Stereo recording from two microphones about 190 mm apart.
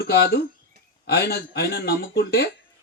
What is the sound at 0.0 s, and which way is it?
Speech, 55° left (ahead or behind).